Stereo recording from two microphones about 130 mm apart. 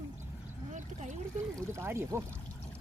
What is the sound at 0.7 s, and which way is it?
Speech, 65° right (ahead or behind).